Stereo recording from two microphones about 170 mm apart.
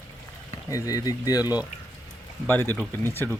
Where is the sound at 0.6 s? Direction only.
20° left (ahead or behind).